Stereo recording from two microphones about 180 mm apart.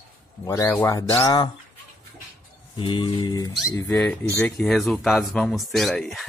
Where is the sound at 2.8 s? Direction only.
25° left (ahead or behind).